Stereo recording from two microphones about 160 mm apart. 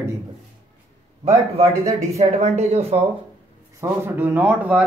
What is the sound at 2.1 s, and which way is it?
Speech, 45° right (ahead or behind).